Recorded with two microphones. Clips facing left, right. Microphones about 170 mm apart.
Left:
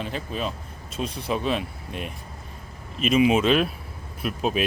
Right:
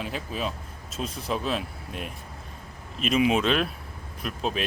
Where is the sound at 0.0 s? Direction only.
5° right (ahead or behind).